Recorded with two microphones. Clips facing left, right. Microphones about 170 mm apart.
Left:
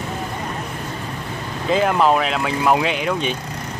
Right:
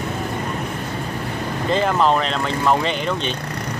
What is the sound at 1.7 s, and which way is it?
Speech, 5° left (ahead or behind).